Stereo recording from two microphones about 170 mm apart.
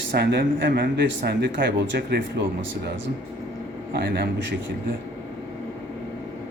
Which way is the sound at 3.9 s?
65° right (ahead or behind).